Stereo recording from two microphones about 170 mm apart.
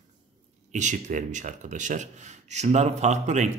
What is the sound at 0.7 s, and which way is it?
Speech, 45° right (ahead or behind).